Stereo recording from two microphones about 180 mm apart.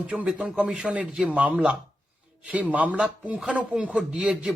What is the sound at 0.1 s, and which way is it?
A man's voice, 5° right (ahead or behind).